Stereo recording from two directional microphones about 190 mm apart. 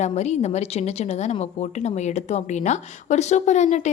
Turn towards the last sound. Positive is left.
turn(degrees=35)  # may be behind; listen again after turning